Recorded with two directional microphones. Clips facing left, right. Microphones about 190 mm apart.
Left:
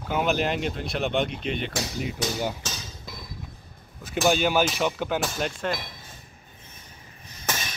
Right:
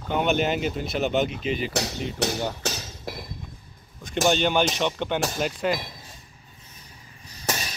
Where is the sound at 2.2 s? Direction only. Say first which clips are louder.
Right 5 dB; 70° right (ahead or behind).